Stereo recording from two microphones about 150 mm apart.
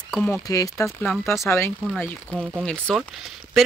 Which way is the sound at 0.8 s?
Centre (ahead or behind).